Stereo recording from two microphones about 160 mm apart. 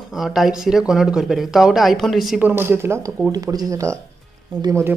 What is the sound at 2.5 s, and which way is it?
Speech, 15° right (ahead or behind).